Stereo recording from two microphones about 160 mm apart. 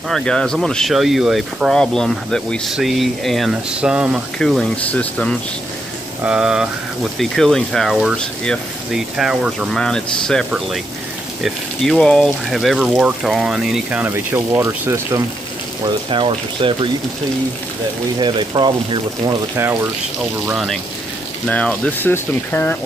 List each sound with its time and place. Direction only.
0.1 s speech: 5° left (ahead or behind)
11.4 s speech: centre (ahead or behind); by 15.2 s 15° right (ahead or behind)
15.8 s speech: 30° right (ahead or behind)
18.2 s speech: 30° right (ahead or behind)
20.4 s speech: centre (ahead or behind)
21.5 s speech: 10° left (ahead or behind)